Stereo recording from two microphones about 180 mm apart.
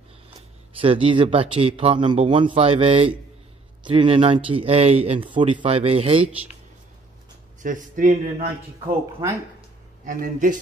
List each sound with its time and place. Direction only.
0.7 s speech: 30° right (ahead or behind)
7.6 s a man's voice: 45° right (ahead or behind)
10.0 s a man's voice: 45° right (ahead or behind)